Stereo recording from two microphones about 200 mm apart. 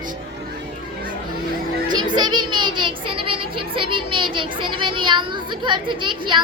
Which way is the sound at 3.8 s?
25° right (ahead or behind).